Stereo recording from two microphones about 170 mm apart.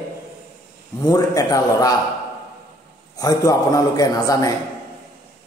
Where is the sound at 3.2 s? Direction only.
20° left (ahead or behind).